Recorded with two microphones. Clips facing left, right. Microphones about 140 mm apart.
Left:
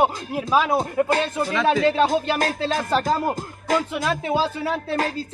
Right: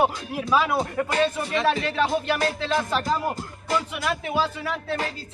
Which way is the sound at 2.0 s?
40° left (ahead or behind).